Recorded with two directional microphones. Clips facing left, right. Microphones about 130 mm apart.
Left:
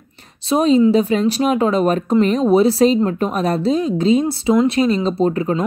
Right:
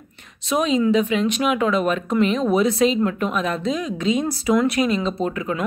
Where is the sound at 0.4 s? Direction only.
35° left (ahead or behind).